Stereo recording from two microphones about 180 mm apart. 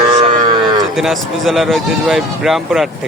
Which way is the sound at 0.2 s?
25° right (ahead or behind).